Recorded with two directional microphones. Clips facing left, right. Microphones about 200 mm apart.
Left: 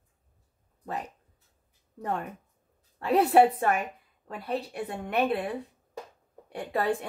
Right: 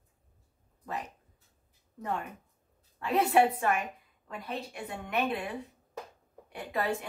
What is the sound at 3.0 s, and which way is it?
Speech, 35° left (ahead or behind).